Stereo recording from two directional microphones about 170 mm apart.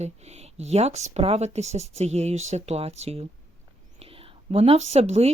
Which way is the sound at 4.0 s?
35° right (ahead or behind).